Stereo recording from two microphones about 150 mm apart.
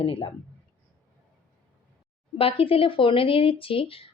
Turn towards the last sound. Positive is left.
turn(degrees=40)  # may be behind; listen again after turning